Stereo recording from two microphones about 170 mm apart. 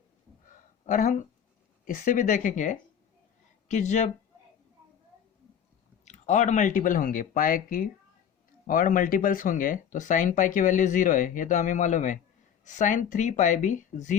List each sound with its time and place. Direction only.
0.9 s speech: 50° left (ahead or behind)
6.1 s speech: 45° left (ahead or behind)